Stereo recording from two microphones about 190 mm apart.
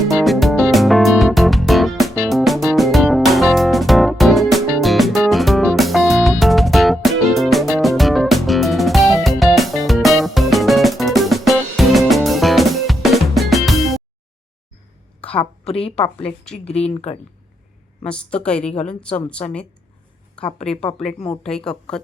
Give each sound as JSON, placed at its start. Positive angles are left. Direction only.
{"t": 0.1, "sound": "music", "side_deg": 0}
{"t": 15.2, "sound": "a sound", "side_deg": 5}
{"t": 15.6, "sound": "speech", "side_deg": 30}
{"t": 16.5, "sound": "speech", "side_deg": 40}
{"t": 18.0, "sound": "a woman's voice", "side_deg": 5}
{"t": 20.7, "sound": "a woman's voice", "side_deg": 5}